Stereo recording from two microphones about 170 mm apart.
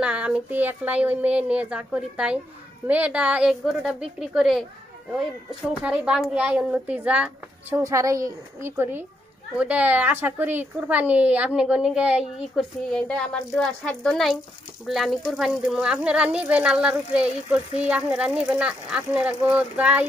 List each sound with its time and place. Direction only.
0.0 s speech: 5° right (ahead or behind)
5.8 s speech: 5° right (ahead or behind)